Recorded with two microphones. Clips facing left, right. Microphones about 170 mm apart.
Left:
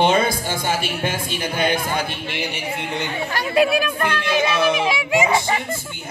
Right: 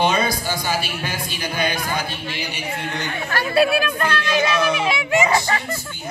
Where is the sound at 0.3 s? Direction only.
25° left (ahead or behind).